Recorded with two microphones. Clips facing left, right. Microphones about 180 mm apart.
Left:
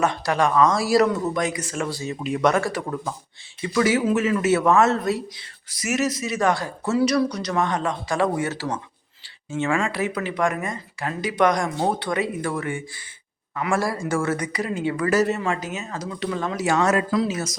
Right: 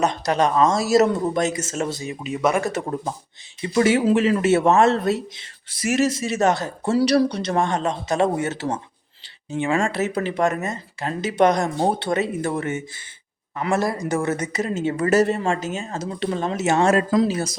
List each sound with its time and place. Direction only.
0.0 s speech: 20° right (ahead or behind)
2.2 s speech: 5° right (ahead or behind)
2.6 s speech: 25° right (ahead or behind)